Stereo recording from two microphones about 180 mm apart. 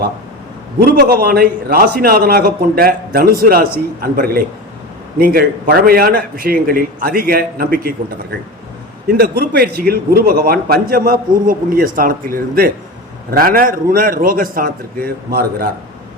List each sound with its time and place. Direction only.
0.8 s a man's voice: 60° right (ahead or behind)